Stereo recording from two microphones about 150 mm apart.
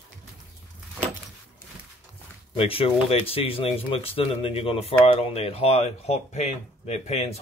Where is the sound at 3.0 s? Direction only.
40° left (ahead or behind).